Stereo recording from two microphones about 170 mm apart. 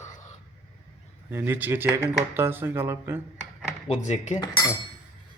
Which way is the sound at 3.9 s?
40° left (ahead or behind).